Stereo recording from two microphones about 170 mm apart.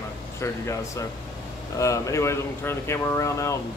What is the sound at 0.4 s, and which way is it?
Speech, 15° left (ahead or behind).